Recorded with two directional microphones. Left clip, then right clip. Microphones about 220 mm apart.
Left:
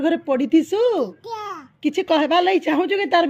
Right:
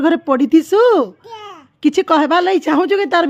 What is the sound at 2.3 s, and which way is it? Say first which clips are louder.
Speech: right 4 dB; 30° right (ahead or behind).